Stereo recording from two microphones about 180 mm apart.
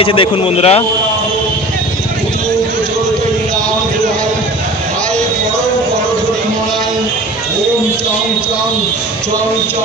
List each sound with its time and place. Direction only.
0.0 s a man's voice: 30° left (ahead or behind)